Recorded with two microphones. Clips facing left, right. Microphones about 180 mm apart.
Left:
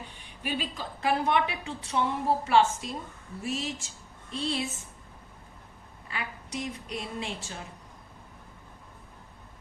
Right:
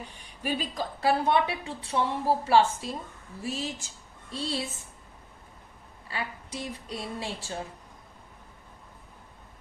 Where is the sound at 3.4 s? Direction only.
30° right (ahead or behind).